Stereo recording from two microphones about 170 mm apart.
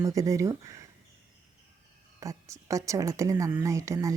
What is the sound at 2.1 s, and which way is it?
A woman's voice, 20° right (ahead or behind).